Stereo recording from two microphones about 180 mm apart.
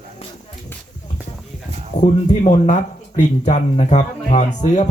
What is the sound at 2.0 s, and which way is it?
Speech, 40° left (ahead or behind).